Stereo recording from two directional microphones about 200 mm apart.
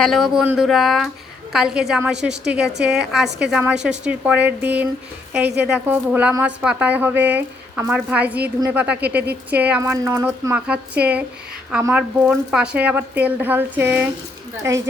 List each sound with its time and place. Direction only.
0.0 s a woman's voice: centre (ahead or behind)
3.2 s a woman's voice: 60° right (ahead or behind)
3.5 s a woman's voice: 5° right (ahead or behind)